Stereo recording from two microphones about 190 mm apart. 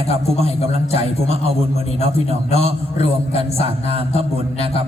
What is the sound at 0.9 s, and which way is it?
A man's voice, 30° left (ahead or behind).